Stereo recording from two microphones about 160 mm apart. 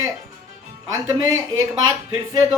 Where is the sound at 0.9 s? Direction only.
20° right (ahead or behind).